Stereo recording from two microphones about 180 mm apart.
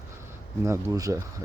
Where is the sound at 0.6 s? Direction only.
15° right (ahead or behind).